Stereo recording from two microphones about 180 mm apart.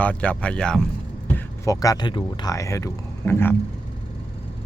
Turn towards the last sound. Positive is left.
turn(degrees=10)  # may be behind; listen again after turning